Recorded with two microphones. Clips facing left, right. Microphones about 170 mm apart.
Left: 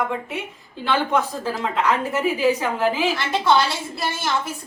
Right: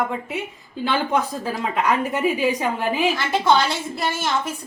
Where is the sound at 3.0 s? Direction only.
15° right (ahead or behind).